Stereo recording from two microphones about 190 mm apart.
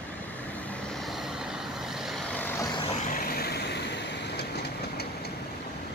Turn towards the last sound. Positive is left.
turn(degrees=60)  # may be behind; listen again after turning